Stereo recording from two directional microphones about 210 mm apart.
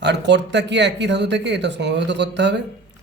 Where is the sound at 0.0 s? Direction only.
55° right (ahead or behind).